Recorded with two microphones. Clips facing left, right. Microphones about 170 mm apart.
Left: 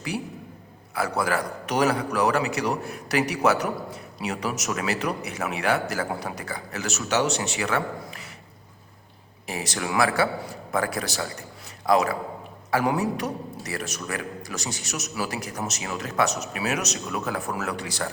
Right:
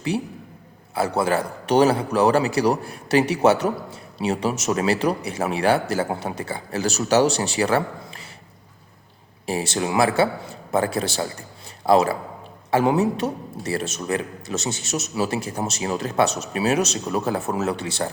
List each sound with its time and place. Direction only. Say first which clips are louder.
0.1 s a man's voice: right 5 dB; 25° right (ahead or behind)
9.5 s a man's voice: right 5 dB; 30° right (ahead or behind)